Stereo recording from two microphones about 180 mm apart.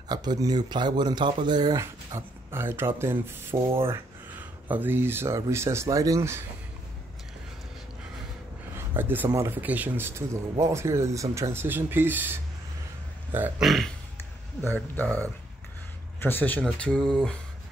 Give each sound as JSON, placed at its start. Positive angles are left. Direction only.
{"t": 0.1, "sound": "speech", "side_deg": -20}
{"t": 8.7, "sound": "speech", "side_deg": -10}